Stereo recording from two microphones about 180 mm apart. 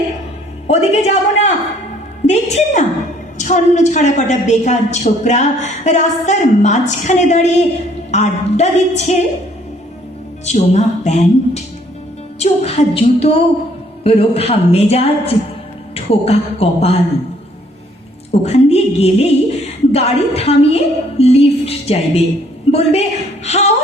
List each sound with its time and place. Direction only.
0.7 s a woman's voice: 35° left (ahead or behind)
10.4 s a woman's voice: 40° left (ahead or behind)
18.4 s a sound: 35° left (ahead or behind)
19.9 s a woman's voice: 35° left (ahead or behind)